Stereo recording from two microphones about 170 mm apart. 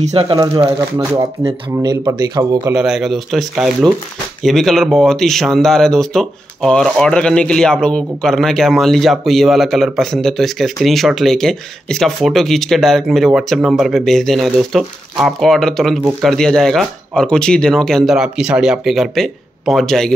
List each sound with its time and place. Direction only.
0.0 s speech: 35° right (ahead or behind)
0.9 s speech: 15° right (ahead or behind)
2.7 s speech: 5° right (ahead or behind)